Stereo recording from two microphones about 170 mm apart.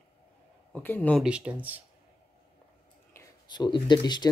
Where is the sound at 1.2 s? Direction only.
5° right (ahead or behind).